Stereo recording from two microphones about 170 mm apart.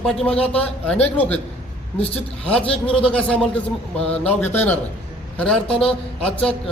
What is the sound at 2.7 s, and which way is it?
A man's voice, 5° left (ahead or behind).